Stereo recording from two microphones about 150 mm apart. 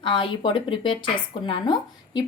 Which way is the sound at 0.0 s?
35° left (ahead or behind).